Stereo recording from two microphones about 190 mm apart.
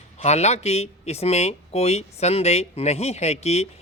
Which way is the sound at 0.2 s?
35° left (ahead or behind).